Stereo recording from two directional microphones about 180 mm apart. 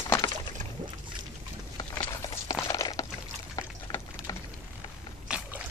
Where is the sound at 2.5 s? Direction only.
20° left (ahead or behind).